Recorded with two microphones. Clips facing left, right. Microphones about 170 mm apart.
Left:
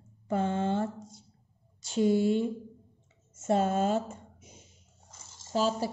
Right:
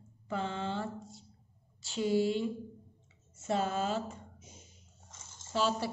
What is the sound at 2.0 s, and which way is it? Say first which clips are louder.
A woman's voice: left 5 dB; 50° left (ahead or behind).